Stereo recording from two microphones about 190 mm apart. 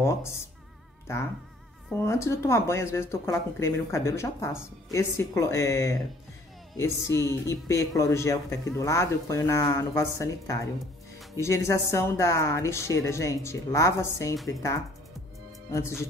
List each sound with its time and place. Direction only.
0.0 s speech: 15° left (ahead or behind)